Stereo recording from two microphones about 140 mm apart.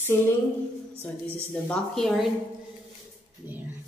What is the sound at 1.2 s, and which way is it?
A woman's voice, 5° left (ahead or behind).